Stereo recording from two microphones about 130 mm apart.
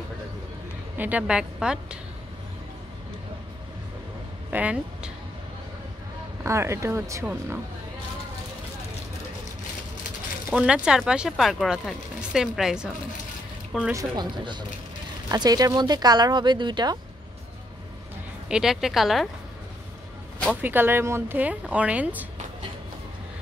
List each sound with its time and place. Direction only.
0.9 s speech: 10° right (ahead or behind)
4.5 s speech: 10° right (ahead or behind)
6.4 s speech: 20° right (ahead or behind)
10.5 s speech: 10° right (ahead or behind)
13.9 s speech: 35° right (ahead or behind)
18.5 s speech: 5° right (ahead or behind)
20.6 s speech: 15° right (ahead or behind)